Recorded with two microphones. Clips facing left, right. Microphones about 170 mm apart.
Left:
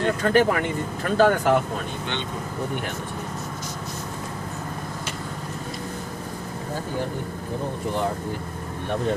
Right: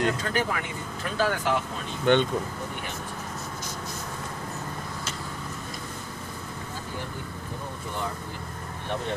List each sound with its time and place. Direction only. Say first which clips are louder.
0.2 s speech: left 9 dB; 60° left (ahead or behind)
2.1 s speech: right 13 dB; 50° right (ahead or behind)